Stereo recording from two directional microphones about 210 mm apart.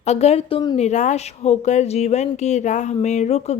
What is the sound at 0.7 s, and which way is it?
Speech, 35° left (ahead or behind).